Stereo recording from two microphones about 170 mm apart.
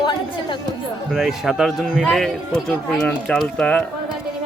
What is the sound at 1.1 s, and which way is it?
A man's voice, 5° right (ahead or behind).